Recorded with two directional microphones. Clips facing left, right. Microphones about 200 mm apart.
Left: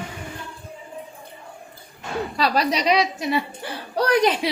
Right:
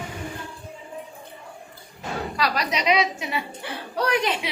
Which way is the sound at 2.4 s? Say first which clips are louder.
Left 5 dB; 30° left (ahead or behind).